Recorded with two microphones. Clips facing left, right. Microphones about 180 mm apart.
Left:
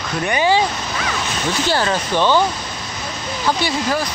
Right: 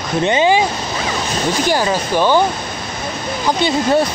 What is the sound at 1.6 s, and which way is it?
Speech, 15° right (ahead or behind).